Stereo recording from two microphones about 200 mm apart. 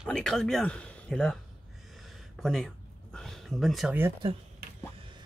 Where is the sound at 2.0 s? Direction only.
Centre (ahead or behind).